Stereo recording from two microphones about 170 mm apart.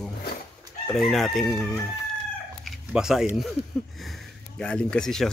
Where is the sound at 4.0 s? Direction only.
Centre (ahead or behind).